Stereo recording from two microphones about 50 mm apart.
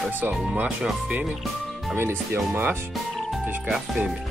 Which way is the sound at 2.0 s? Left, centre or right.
Right.